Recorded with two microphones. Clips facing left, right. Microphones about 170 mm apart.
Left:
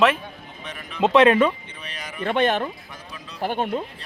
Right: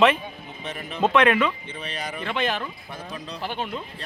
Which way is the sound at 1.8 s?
30° right (ahead or behind).